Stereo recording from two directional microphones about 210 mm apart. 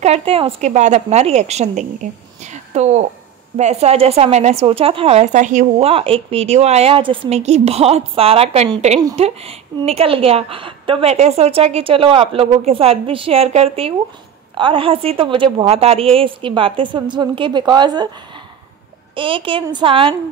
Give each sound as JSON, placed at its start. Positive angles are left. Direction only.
{"t": 0.0, "sound": "a woman's voice", "side_deg": -30}
{"t": 2.4, "sound": "a sound", "side_deg": -35}
{"t": 3.5, "sound": "a woman's voice", "side_deg": -30}
{"t": 19.1, "sound": "a woman's voice", "side_deg": -25}